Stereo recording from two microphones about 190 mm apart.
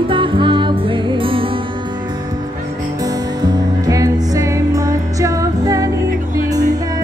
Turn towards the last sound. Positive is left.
turn(degrees=-20)  # may be behind; listen again after turning